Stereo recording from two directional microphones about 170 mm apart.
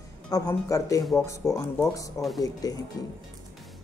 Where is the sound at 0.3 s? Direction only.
20° left (ahead or behind).